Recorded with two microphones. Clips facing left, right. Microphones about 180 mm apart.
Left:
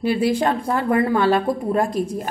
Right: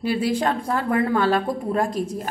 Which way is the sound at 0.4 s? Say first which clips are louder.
Left 2 dB; 10° left (ahead or behind).